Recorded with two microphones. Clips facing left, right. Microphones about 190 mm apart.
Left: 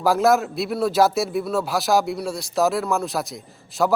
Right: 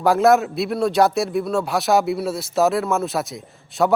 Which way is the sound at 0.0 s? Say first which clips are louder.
Right 3 dB; centre (ahead or behind).